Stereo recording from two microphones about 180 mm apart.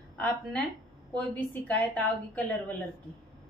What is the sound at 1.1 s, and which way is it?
A woman's voice, 10° left (ahead or behind).